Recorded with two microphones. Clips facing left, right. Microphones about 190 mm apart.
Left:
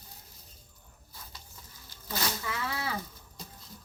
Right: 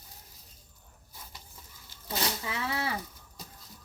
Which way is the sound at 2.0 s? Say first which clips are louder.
Right 1 dB; 20° right (ahead or behind).